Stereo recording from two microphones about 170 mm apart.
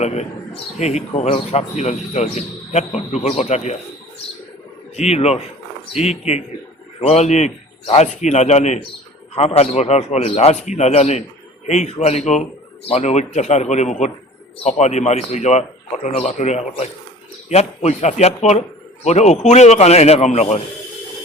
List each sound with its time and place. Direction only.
0.0 s speech: 40° left (ahead or behind)
4.9 s speech: 40° left (ahead or behind)